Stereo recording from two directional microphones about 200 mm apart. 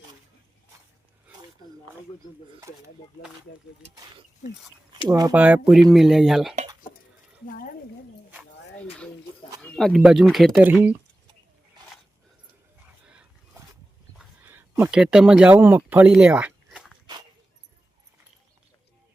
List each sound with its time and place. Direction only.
2.6 s speech: 15° right (ahead or behind)
5.0 s speech: 20° right (ahead or behind)
5.3 s speech: 10° right (ahead or behind)
9.6 s speech: 5° left (ahead or behind)
14.4 s speech: 10° right (ahead or behind)